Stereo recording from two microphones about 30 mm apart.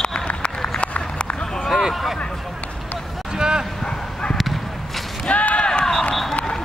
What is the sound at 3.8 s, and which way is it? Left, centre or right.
Bow-wow, left.